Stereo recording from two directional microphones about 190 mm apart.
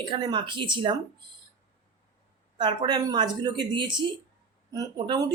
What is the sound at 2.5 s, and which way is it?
Speech, 25° right (ahead or behind).